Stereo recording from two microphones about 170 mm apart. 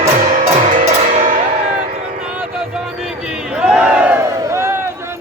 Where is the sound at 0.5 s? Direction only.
45° right (ahead or behind).